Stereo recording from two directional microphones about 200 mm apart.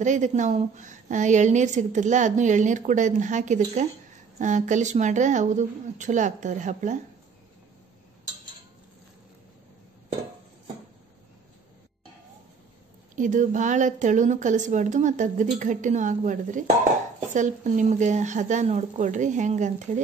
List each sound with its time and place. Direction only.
0.0 s a woman's voice: 35° right (ahead or behind)
13.1 s a woman's voice: 40° right (ahead or behind)